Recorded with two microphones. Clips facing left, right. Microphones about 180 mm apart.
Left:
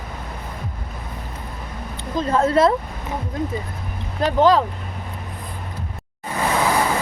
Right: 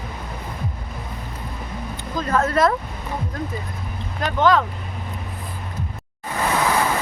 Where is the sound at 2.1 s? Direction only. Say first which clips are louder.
Left 3 dB; 25° left (ahead or behind).